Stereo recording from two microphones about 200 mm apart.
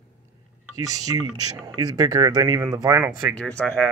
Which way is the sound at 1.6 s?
20° right (ahead or behind).